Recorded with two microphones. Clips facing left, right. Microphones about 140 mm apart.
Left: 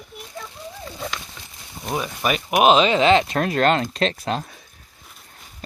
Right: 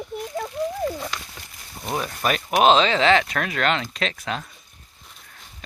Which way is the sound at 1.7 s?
Centre (ahead or behind).